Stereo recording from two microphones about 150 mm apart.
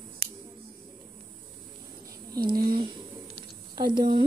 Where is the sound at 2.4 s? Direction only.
85° right.